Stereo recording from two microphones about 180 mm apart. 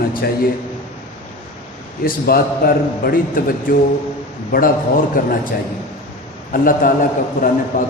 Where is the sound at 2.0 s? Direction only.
55° left (ahead or behind).